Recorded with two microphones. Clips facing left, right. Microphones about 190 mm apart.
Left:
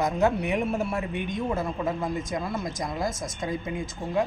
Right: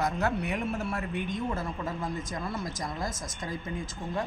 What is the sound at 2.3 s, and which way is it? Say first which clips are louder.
Speech: left 4 dB; 15° left (ahead or behind).